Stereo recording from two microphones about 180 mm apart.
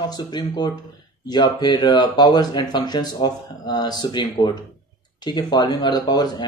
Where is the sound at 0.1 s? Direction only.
25° left (ahead or behind).